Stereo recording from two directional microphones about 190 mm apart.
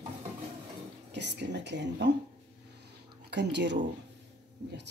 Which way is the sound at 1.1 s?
65° right (ahead or behind).